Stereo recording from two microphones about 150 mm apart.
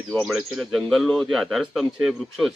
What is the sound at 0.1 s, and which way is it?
Speech, centre (ahead or behind).